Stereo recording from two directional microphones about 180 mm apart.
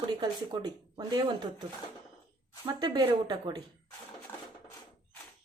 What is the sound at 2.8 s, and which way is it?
Speech, 25° right (ahead or behind).